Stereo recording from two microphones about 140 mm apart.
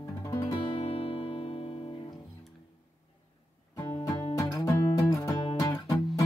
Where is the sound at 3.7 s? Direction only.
25° left (ahead or behind).